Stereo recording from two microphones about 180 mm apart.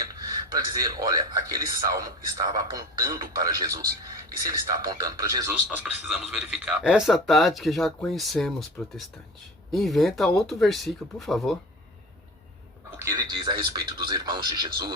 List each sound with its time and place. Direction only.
0.1 s a sound: 20° right (ahead or behind)
1.2 s speech: 20° right (ahead or behind)
4.9 s speech: 20° right (ahead or behind); by 11.5 s centre (ahead or behind)
13.0 s speech: 20° right (ahead or behind)